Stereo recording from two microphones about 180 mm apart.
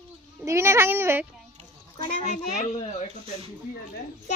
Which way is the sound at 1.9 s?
40° left (ahead or behind).